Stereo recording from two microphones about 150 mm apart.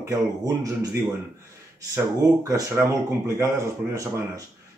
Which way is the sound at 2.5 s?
15° right (ahead or behind).